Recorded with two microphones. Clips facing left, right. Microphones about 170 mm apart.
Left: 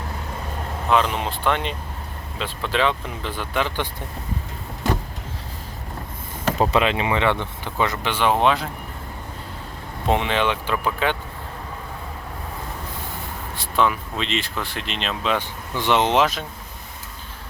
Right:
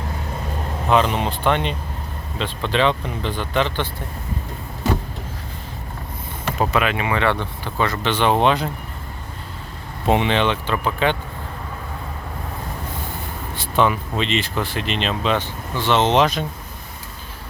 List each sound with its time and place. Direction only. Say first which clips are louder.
0.9 s speech: right 2 dB; centre (ahead or behind)
6.6 s speech: even; 25° left (ahead or behind); by 8.6 s centre (ahead or behind)
10.1 s speech: right 3 dB; centre (ahead or behind)
13.6 s speech: right 2 dB; centre (ahead or behind)
15.4 s speech: right 2 dB; 15° left (ahead or behind)